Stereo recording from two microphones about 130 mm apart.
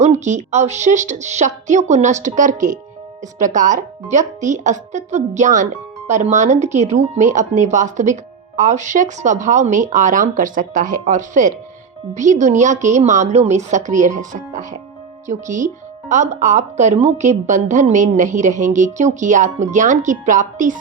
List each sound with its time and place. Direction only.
0.0 s speech: 60° right (ahead or behind); by 20.7 s 80° right